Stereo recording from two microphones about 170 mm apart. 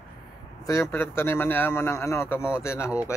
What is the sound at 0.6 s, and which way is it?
Speech, 15° left (ahead or behind).